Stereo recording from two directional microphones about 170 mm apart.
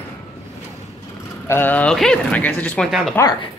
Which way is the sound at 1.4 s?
15° left (ahead or behind).